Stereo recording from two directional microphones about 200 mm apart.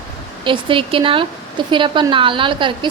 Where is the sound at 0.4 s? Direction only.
25° right (ahead or behind).